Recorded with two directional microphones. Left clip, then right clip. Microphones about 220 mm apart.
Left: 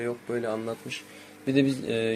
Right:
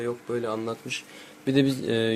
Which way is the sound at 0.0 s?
10° right (ahead or behind).